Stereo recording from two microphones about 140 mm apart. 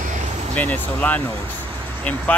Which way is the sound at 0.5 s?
10° left (ahead or behind).